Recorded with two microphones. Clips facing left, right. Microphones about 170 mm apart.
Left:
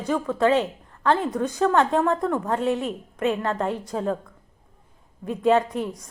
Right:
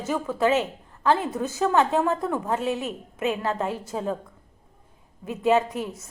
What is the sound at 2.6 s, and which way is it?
Speech, 30° left (ahead or behind).